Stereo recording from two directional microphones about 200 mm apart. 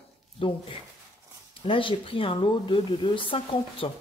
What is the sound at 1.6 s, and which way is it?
Speech, 25° left (ahead or behind).